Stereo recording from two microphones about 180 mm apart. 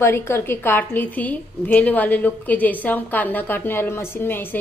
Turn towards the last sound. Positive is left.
turn(degrees=10)  # may be behind; listen again after turning